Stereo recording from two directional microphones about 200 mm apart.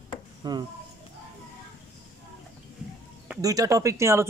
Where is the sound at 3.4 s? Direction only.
15° right (ahead or behind).